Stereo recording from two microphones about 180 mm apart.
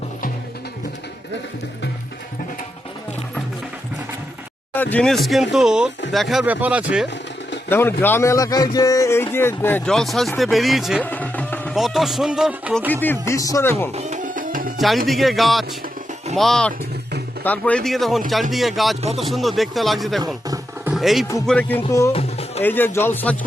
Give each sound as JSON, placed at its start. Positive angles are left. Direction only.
{"t": 4.7, "sound": "speech", "side_deg": 10}
{"t": 7.7, "sound": "a man's voice", "side_deg": 10}
{"t": 11.0, "sound": "speech", "side_deg": 10}
{"t": 12.9, "sound": "a man's voice", "side_deg": 10}
{"t": 13.9, "sound": "music", "side_deg": -45}
{"t": 14.8, "sound": "speech", "side_deg": 0}
{"t": 20.2, "sound": "music", "side_deg": -20}
{"t": 20.9, "sound": "a man's voice", "side_deg": 0}
{"t": 22.1, "sound": "music", "side_deg": 35}
{"t": 22.6, "sound": "a man's voice", "side_deg": 10}